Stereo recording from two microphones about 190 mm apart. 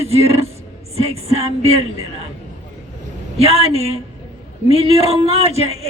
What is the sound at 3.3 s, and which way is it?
A man's voice, 30° right (ahead or behind).